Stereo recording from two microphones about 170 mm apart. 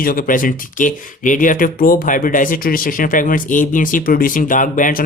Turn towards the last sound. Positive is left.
turn(degrees=50)  # may be behind; listen again after turning